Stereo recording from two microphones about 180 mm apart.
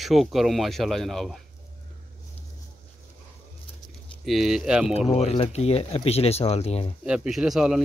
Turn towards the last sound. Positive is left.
turn(degrees=-5)  # may be behind; listen again after turning